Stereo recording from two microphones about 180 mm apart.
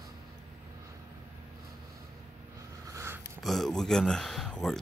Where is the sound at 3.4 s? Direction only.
Centre (ahead or behind).